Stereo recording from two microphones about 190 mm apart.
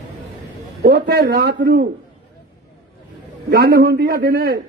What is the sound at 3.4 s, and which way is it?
A man's voice, 55° right (ahead or behind).